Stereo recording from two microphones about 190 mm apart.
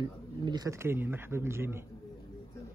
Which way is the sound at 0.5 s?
20° right (ahead or behind).